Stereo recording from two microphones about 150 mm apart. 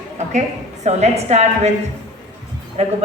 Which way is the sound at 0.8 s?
45° right (ahead or behind).